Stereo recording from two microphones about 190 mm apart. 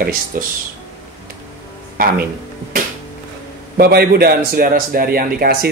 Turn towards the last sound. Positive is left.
turn(degrees=-50)  # may be behind; listen again after turning